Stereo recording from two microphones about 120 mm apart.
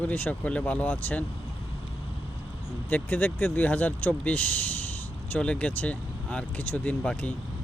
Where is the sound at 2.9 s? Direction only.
15° left (ahead or behind).